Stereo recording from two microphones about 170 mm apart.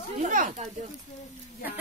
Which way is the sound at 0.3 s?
50° right (ahead or behind).